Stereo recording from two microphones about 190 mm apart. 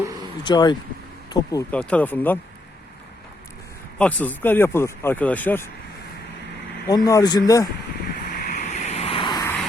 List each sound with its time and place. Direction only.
0.2 s vehicle: 25° left (ahead or behind)
1.3 s speech: 15° left (ahead or behind)
1.8 s speech: 5° left (ahead or behind)
3.9 s speech: 5° left (ahead or behind)
6.8 s speech: 20° left (ahead or behind)
8.3 s vehicle: 40° left (ahead or behind); by 9.6 s 20° left (ahead or behind)